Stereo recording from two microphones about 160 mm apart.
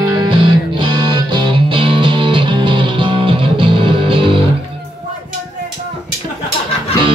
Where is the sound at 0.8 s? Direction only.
30° right (ahead or behind).